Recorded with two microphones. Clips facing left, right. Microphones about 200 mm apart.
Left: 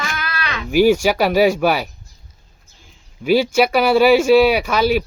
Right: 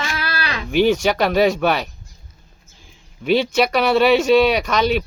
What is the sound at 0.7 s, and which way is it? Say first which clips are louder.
Speech: left 3 dB; 10° left (ahead or behind).